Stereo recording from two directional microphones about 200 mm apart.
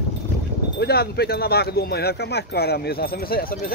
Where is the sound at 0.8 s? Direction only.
50° left (ahead or behind).